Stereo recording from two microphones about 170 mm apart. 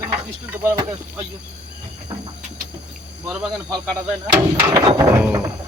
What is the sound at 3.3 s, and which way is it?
Speech, 5° right (ahead or behind).